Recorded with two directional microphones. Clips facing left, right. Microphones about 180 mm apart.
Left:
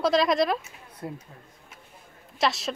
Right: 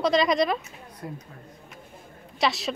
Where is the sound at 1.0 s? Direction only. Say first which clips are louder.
Left 1 dB; 25° left (ahead or behind).